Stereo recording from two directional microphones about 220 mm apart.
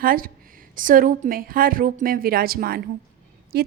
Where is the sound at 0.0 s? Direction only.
40° right (ahead or behind).